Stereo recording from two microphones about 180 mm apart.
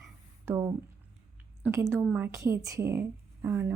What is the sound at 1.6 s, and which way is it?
A woman's voice, 15° right (ahead or behind).